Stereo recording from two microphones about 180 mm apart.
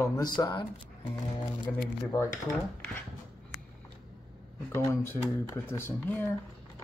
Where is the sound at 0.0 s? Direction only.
20° left (ahead or behind).